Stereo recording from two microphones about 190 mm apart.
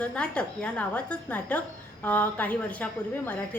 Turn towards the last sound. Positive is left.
turn(degrees=10)  # may be behind; listen again after turning